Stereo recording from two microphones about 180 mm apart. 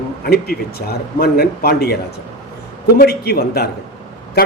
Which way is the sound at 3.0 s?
60° left (ahead or behind).